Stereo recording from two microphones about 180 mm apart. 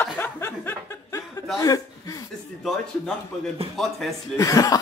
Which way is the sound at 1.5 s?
20° left (ahead or behind).